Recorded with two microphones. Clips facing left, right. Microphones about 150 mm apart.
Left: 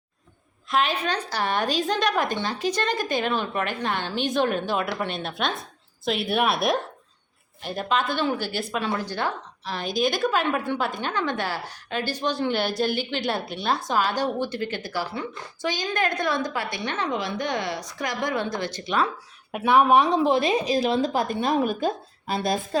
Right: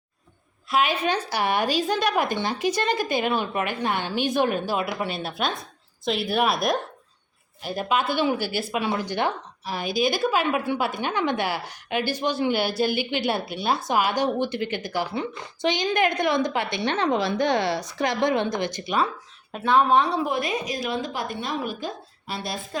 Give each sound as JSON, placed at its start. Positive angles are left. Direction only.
{"t": 0.7, "sound": "a woman's voice", "side_deg": -10}
{"t": 18.9, "sound": "a woman's voice", "side_deg": 0}
{"t": 19.5, "sound": "a woman's voice", "side_deg": 10}
{"t": 22.7, "sound": "a woman's voice", "side_deg": 35}